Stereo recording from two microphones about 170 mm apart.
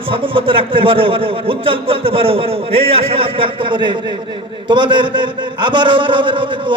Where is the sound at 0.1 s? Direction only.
30° right (ahead or behind).